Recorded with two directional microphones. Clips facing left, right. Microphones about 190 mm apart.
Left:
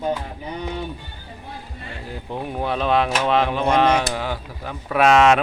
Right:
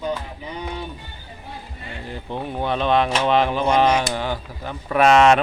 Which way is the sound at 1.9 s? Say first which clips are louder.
Right 1 dB; 5° left (ahead or behind).